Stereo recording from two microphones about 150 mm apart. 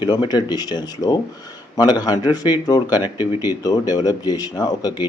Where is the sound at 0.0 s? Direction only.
30° left (ahead or behind).